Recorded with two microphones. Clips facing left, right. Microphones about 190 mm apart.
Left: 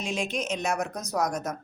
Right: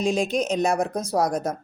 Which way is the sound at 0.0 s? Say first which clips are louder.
Right 8 dB; 35° right (ahead or behind).